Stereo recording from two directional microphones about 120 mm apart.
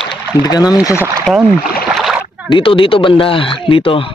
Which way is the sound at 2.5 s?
45° left (ahead or behind).